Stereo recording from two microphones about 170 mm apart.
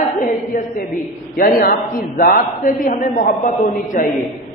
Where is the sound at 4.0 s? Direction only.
45° left (ahead or behind).